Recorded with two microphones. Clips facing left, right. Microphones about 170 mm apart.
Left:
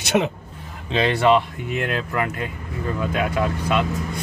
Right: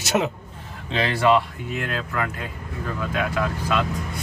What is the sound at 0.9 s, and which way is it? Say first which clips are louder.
Speech: left 2 dB; 20° left (ahead or behind).